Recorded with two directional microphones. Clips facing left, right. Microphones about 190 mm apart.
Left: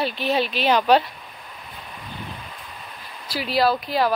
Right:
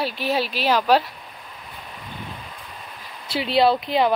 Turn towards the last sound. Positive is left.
turn(degrees=-20)  # may be behind; listen again after turning